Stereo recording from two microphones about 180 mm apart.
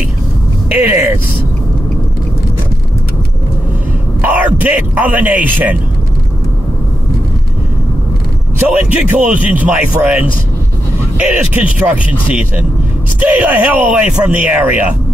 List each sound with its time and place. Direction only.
0.7 s a man's voice: 10° right (ahead or behind)
4.2 s speech: 10° right (ahead or behind)
8.5 s a man's voice: 10° right (ahead or behind)
13.2 s a man's voice: 10° right (ahead or behind)